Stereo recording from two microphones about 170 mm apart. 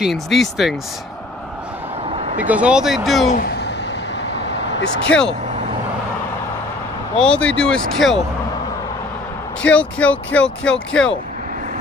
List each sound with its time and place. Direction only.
0.0 s speech: centre (ahead or behind)
2.0 s vehicle: 40° right (ahead or behind)
2.3 s speech: 10° right (ahead or behind)
3.3 s a sound: 70° left (ahead or behind)
4.7 s speech: 90° left
7.2 s speech: 5° left (ahead or behind)
9.7 s speech: 5° left (ahead or behind)